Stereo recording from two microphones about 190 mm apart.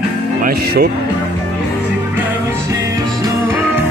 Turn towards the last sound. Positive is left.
turn(degrees=-15)  # may be behind; listen again after turning